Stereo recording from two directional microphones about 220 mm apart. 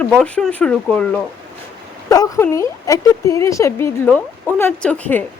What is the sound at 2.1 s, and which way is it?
Speech, 15° left (ahead or behind).